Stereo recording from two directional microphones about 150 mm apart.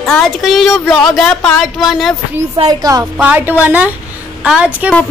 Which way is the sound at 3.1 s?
10° right (ahead or behind).